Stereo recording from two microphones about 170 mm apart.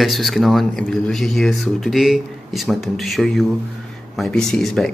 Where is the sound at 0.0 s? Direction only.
Centre (ahead or behind).